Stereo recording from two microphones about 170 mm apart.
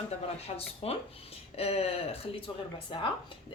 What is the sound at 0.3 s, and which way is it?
A woman's voice, 35° left (ahead or behind).